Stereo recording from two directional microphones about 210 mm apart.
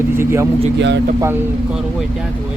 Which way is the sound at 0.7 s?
55° right (ahead or behind).